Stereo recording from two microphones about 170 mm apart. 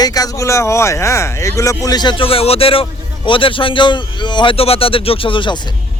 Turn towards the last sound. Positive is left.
turn(degrees=30)  # may be behind; listen again after turning